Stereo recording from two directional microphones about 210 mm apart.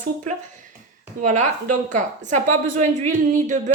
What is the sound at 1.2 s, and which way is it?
A woman's voice, 35° right (ahead or behind).